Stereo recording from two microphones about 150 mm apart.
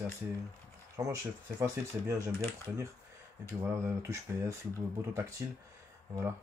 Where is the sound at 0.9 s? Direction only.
20° right (ahead or behind).